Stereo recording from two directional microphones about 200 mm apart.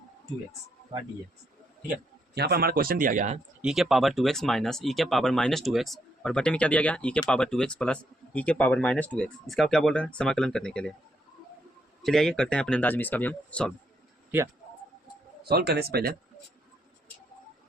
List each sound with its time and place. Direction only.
2.3 s a man's voice: 55° right (ahead or behind)
3.6 s speech: 5° right (ahead or behind)
12.0 s speech: centre (ahead or behind)
14.3 s speech: 10° right (ahead or behind)
15.4 s a man's voice: 50° right (ahead or behind)